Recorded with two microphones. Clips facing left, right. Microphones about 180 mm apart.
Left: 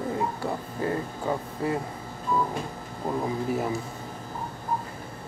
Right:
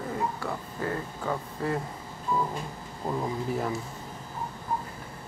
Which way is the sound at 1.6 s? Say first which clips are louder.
Left 2 dB; 10° left (ahead or behind).